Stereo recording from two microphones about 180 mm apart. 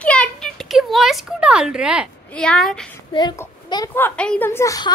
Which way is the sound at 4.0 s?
10° left (ahead or behind).